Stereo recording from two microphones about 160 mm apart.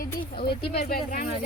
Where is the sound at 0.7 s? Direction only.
70° left (ahead or behind).